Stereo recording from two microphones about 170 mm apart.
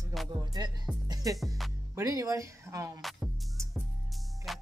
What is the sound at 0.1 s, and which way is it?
Music, centre (ahead or behind).